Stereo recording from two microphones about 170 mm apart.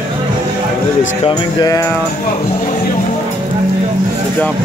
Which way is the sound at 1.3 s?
25° left (ahead or behind).